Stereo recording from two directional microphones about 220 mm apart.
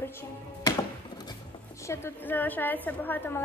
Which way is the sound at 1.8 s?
10° left (ahead or behind).